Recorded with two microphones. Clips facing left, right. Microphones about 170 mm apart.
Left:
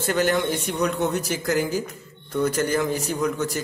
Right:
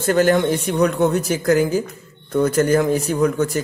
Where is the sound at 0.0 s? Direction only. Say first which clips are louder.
Right 6 dB; 50° right (ahead or behind).